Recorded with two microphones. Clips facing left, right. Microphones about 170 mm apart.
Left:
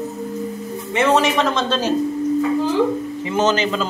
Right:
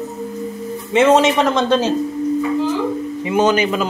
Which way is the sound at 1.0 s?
20° right (ahead or behind).